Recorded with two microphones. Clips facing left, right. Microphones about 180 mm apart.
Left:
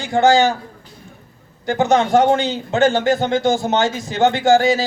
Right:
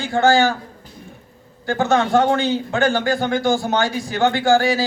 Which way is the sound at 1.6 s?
20° left (ahead or behind).